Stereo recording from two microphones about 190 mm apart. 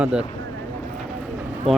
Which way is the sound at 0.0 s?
5° right (ahead or behind).